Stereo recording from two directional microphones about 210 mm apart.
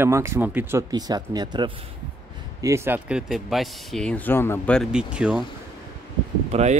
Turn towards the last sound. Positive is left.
turn(degrees=-30)  # may be behind; listen again after turning